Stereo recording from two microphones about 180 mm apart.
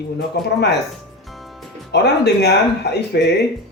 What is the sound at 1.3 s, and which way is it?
Music, centre (ahead or behind).